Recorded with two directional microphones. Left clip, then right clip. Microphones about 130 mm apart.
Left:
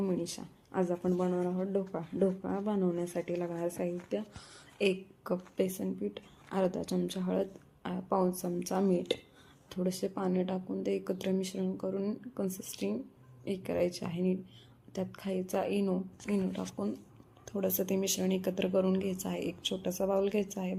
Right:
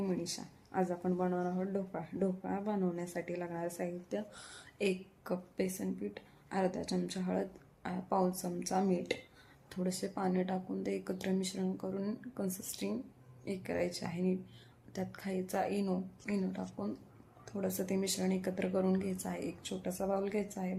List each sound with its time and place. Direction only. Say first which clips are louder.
0.0 s speech: left 3 dB; 20° left (ahead or behind)
1.1 s speech: left 3 dB; 10° left (ahead or behind)
1.7 s speech: left 5 dB; 20° left (ahead or behind)